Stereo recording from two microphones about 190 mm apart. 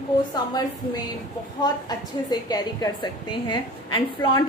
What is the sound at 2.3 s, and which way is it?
A woman's voice, 20° left (ahead or behind).